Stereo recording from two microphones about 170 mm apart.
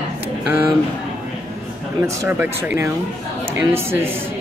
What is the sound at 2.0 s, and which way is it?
Speech, 15° right (ahead or behind).